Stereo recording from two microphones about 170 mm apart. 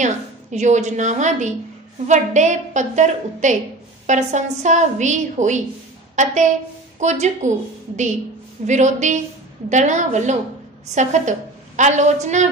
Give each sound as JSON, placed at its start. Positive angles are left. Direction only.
{"t": 0.0, "sound": "a woman's voice", "side_deg": -45}